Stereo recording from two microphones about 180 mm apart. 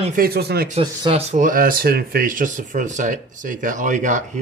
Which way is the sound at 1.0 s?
35° right (ahead or behind).